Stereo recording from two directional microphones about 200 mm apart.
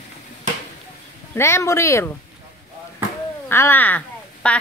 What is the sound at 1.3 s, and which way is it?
Speech, 15° left (ahead or behind).